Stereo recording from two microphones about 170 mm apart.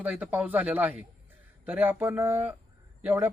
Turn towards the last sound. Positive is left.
turn(degrees=-15)  # may be behind; listen again after turning